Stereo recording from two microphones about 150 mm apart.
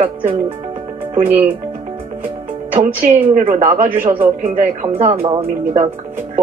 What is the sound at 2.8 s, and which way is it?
Speech, 65° right (ahead or behind).